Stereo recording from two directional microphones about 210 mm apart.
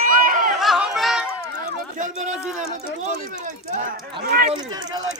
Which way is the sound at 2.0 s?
35° right (ahead or behind).